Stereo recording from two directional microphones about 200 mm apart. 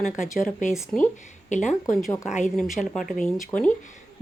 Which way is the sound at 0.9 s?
5° left (ahead or behind).